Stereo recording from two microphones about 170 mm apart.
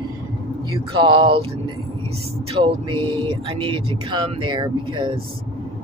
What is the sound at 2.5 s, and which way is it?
Speech, 30° right (ahead or behind).